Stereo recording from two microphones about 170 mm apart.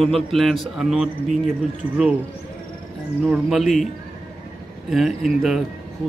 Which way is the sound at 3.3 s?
Centre (ahead or behind).